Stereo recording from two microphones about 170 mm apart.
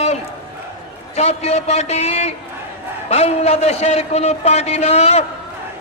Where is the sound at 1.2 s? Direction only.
40° left (ahead or behind).